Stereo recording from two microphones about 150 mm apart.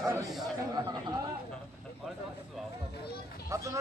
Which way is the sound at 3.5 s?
20° right (ahead or behind).